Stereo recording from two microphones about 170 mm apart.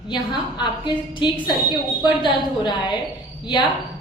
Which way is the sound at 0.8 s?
25° left (ahead or behind).